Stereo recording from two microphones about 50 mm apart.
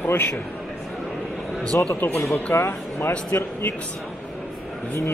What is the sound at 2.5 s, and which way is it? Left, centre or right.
Speech, left.